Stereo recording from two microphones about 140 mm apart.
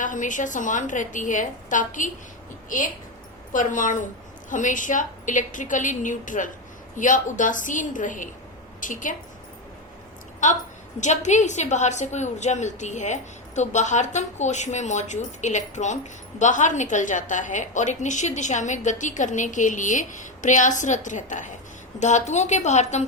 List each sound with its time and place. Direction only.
0.0 s a woman's voice: 65° left (ahead or behind)
3.5 s a woman's voice: 65° left (ahead or behind)
11.0 s a woman's voice: 55° left (ahead or behind)